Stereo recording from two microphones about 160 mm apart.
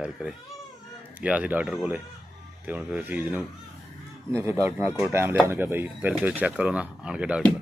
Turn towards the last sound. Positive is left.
turn(degrees=-5)  # may be behind; listen again after turning